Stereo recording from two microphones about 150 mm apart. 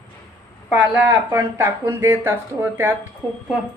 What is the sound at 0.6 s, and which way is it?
Speech, 5° right (ahead or behind).